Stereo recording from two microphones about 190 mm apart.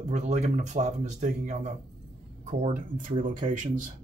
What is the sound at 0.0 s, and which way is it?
Speech, 35° right (ahead or behind).